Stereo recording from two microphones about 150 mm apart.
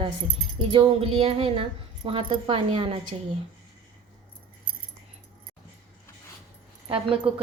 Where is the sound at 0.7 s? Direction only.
40° right (ahead or behind).